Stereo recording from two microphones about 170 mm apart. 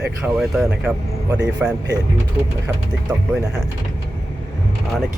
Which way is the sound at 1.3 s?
20° right (ahead or behind).